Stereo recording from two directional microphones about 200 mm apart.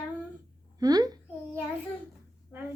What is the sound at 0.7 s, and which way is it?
Speech, 20° right (ahead or behind).